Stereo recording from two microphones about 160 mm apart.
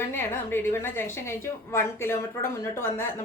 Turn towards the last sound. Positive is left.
turn(degrees=15)  # may be behind; listen again after turning